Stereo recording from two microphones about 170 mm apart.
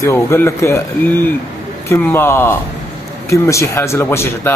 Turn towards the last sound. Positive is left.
turn(degrees=15)  # may be behind; listen again after turning